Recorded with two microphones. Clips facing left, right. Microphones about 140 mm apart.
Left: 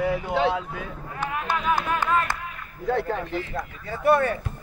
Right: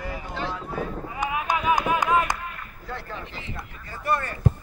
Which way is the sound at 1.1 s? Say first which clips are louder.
Even; 10° right (ahead or behind).